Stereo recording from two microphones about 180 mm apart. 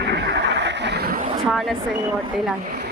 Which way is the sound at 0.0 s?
70° right (ahead or behind).